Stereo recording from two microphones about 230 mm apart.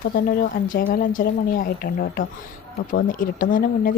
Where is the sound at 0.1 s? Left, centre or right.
Left.